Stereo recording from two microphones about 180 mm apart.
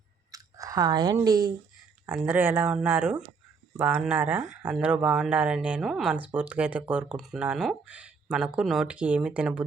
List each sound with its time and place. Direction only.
0.3 s speech: 20° right (ahead or behind)
2.0 s speech: 10° right (ahead or behind)